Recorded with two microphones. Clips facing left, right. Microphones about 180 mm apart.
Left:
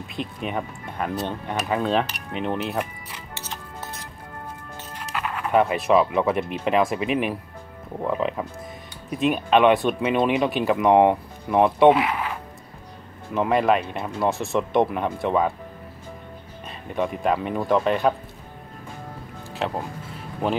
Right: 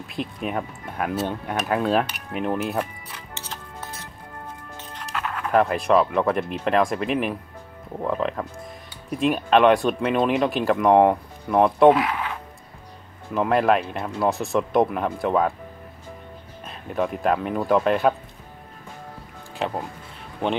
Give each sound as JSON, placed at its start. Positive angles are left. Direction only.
{"t": 0.1, "sound": "speech", "side_deg": 0}
{"t": 4.9, "sound": "speech", "side_deg": 5}
{"t": 16.6, "sound": "speech", "side_deg": 0}
{"t": 19.5, "sound": "speech", "side_deg": 0}